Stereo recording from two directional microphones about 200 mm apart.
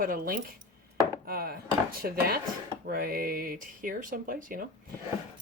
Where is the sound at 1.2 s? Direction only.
50° right (ahead or behind).